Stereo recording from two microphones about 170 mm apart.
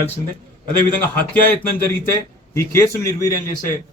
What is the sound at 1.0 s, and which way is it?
A man's voice, 10° left (ahead or behind).